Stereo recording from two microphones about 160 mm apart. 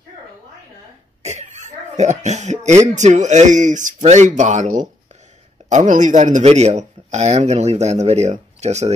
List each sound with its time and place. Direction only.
1.2 s speech: 45° right (ahead or behind)